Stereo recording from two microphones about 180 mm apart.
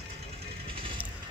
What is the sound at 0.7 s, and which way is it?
Vehicle, 30° right (ahead or behind).